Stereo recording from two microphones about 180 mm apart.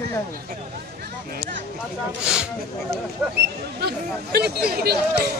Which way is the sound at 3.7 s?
60° right (ahead or behind).